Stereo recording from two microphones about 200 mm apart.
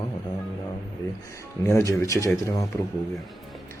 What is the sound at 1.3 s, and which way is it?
Speech, 15° left (ahead or behind).